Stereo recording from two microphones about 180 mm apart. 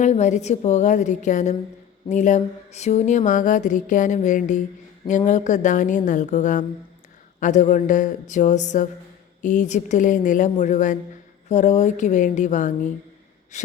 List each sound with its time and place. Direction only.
0.0 s a woman's voice: 40° left (ahead or behind)